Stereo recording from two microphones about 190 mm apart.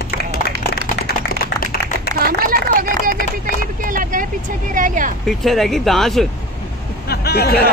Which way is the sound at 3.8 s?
45° right (ahead or behind).